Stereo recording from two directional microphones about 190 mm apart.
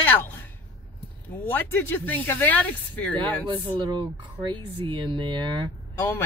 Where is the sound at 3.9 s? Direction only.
25° right (ahead or behind).